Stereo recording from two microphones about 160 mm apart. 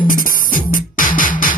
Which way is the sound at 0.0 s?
60° left (ahead or behind).